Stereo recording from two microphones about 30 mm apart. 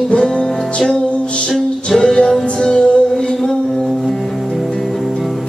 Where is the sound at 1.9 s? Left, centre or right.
Centre.